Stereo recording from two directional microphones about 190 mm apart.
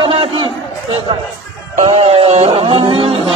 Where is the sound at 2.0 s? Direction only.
30° right (ahead or behind).